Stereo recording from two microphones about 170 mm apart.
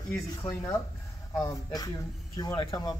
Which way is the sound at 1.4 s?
20° left (ahead or behind).